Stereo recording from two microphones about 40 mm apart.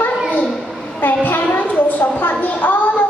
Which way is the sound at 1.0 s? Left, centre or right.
Left.